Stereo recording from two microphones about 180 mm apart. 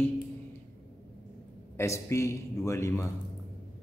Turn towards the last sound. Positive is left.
turn(degrees=15)  # may be behind; listen again after turning